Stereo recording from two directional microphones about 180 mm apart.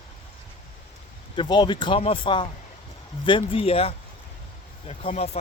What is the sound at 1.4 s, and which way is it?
Speech, 25° left (ahead or behind).